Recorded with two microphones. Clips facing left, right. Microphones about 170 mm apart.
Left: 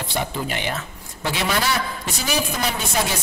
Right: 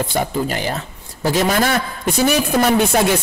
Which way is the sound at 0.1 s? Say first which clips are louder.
Right 6 dB; 40° right (ahead or behind).